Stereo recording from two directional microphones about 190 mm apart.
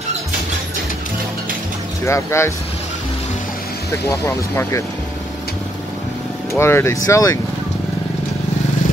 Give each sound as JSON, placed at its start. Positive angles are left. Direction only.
{"t": 2.0, "sound": "speech", "side_deg": 15}
{"t": 4.1, "sound": "speech", "side_deg": 15}
{"t": 6.5, "sound": "speech", "side_deg": 15}